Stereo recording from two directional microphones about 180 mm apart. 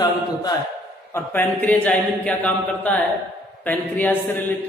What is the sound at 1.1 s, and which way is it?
A man's voice, 10° left (ahead or behind).